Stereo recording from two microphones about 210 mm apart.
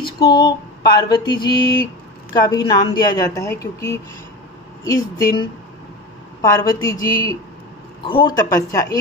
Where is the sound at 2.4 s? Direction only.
15° left (ahead or behind).